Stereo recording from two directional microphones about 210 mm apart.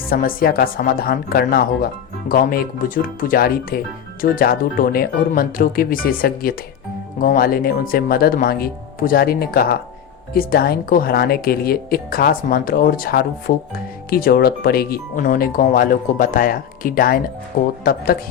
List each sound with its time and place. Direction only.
0.1 s speech: 45° left (ahead or behind)